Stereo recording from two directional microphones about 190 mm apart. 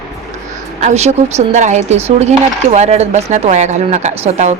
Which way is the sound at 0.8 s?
35° right (ahead or behind).